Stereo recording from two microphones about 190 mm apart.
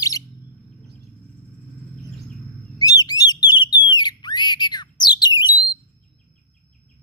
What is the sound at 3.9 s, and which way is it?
Squawk, 25° left (ahead or behind).